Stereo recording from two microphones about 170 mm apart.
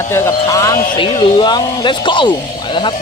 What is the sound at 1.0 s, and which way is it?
Speech, 30° left (ahead or behind).